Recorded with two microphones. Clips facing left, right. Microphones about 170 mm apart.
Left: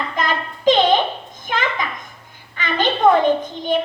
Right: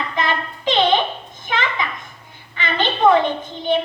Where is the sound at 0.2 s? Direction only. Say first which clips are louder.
Right 1 dB; 45° left (ahead or behind).